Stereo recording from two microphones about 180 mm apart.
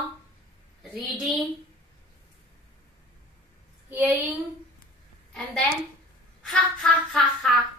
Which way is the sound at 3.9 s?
10° right (ahead or behind).